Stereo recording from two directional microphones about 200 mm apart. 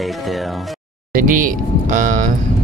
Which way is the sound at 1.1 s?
40° right (ahead or behind).